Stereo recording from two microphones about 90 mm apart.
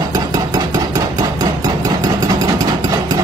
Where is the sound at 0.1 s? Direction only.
45° right (ahead or behind).